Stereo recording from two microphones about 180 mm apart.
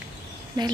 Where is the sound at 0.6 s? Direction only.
25° right (ahead or behind).